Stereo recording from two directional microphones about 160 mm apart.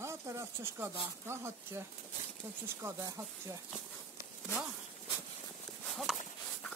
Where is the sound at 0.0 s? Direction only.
20° right (ahead or behind).